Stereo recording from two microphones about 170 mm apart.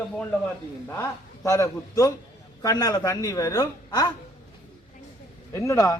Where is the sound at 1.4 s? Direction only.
20° left (ahead or behind).